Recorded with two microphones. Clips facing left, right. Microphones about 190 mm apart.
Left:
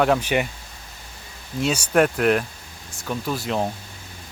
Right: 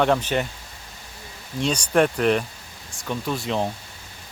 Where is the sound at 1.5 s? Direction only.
5° left (ahead or behind).